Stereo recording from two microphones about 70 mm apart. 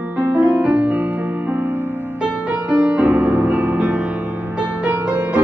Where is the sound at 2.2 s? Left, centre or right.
Centre.